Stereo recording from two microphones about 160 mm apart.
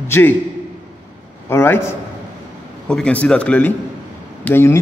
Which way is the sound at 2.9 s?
5° left (ahead or behind).